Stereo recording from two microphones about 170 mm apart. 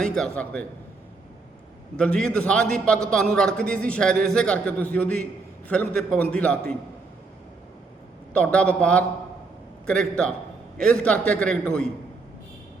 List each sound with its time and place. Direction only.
0.0 s a man's voice: 5° left (ahead or behind)
2.0 s a man's voice: 5° left (ahead or behind)
8.3 s a man's voice: 10° left (ahead or behind)